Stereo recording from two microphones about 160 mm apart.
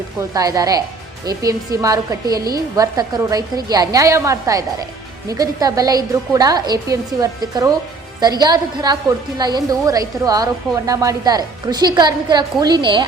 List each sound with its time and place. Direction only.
0.2 s a woman's voice: 20° right (ahead or behind)